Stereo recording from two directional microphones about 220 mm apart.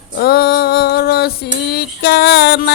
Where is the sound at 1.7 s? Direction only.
50° left (ahead or behind).